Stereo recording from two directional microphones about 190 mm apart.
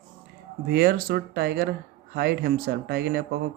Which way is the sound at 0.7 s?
55° right (ahead or behind).